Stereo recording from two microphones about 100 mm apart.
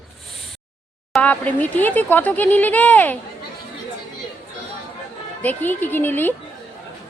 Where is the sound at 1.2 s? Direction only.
15° left (ahead or behind).